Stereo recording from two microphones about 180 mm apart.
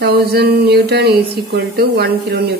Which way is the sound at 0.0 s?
60° right (ahead or behind).